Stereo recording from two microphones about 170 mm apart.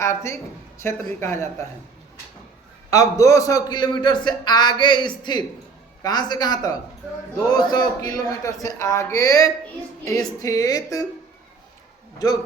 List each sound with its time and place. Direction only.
0.0 s speech: 15° left (ahead or behind)
2.9 s a man's voice: 20° left (ahead or behind)